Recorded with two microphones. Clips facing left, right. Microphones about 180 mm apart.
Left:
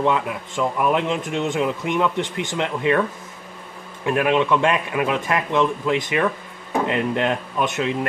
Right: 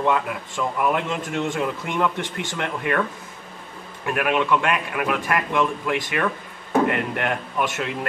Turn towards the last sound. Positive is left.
turn(degrees=20)  # may be behind; listen again after turning